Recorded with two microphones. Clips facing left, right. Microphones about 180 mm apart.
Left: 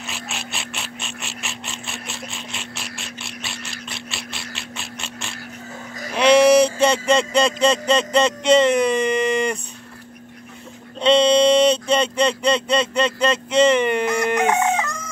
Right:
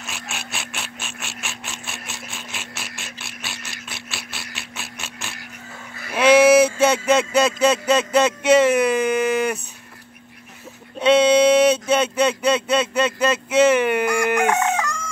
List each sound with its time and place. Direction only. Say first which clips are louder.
0.0 s ratchet: left 2 dB; centre (ahead or behind)
6.0 s speech: even; 5° right (ahead or behind)
11.0 s speech: even; 5° right (ahead or behind)
14.0 s crowing: even; 20° left (ahead or behind)